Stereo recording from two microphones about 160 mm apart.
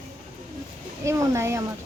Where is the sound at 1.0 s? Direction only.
15° right (ahead or behind).